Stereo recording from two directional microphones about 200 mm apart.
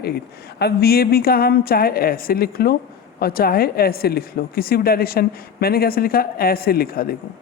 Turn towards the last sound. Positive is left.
turn(degrees=45)  # may be behind; listen again after turning